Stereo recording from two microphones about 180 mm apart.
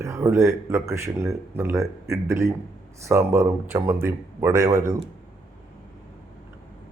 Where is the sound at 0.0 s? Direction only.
15° right (ahead or behind).